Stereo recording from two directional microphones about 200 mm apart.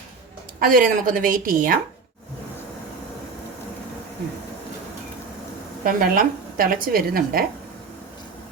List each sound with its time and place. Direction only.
0.6 s a woman's voice: 45° right (ahead or behind)
5.8 s a woman's voice: 45° right (ahead or behind)